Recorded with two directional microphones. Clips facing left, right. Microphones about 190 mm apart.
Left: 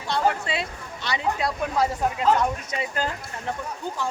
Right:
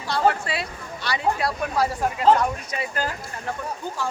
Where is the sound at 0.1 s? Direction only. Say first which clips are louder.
Right 2 dB; 20° left (ahead or behind).